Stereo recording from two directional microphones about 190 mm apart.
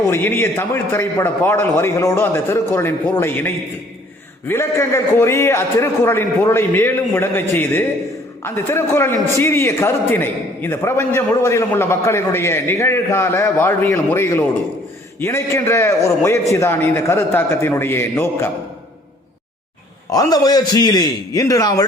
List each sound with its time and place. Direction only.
0.1 s a man's voice: 10° left (ahead or behind)
20.1 s a man's voice: 20° left (ahead or behind)